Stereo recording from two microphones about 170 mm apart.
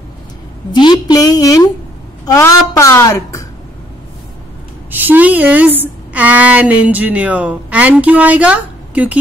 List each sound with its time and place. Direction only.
0.7 s a woman's voice: 25° left (ahead or behind)
4.9 s a woman's voice: 10° right (ahead or behind)